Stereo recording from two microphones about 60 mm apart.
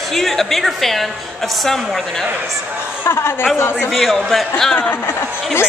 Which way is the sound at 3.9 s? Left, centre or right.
Centre.